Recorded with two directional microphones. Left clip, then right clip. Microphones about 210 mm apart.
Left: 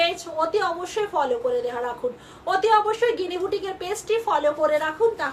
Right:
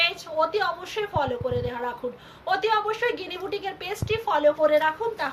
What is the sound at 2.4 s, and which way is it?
A woman's voice, 20° left (ahead or behind).